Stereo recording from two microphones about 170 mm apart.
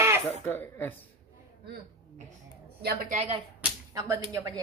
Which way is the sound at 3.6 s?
20° right (ahead or behind).